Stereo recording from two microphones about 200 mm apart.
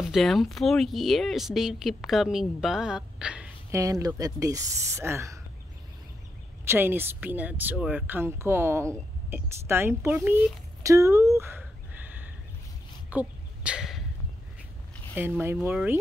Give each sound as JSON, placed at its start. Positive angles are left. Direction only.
{"t": 0.0, "sound": "speech", "side_deg": 0}
{"t": 3.7, "sound": "speech", "side_deg": -15}
{"t": 6.6, "sound": "speech", "side_deg": -10}
{"t": 13.1, "sound": "a sound", "side_deg": -5}
{"t": 15.1, "sound": "speech", "side_deg": -10}